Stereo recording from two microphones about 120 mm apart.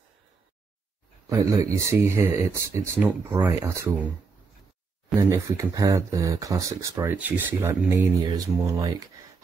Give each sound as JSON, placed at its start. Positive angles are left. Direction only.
{"t": 1.3, "sound": "speech", "side_deg": -25}
{"t": 5.1, "sound": "speech", "side_deg": -25}
{"t": 8.2, "sound": "speech", "side_deg": -35}